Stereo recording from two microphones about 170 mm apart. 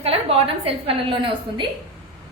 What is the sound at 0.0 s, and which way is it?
A woman's voice, 35° right (ahead or behind).